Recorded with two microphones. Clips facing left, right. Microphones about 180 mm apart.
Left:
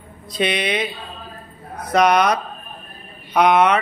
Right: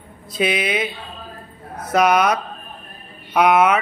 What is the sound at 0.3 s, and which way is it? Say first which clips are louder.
Speech: even; 5° right (ahead or behind).